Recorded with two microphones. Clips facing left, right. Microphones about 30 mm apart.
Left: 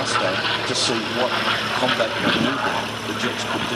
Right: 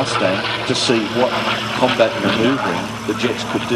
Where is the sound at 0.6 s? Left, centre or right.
Centre.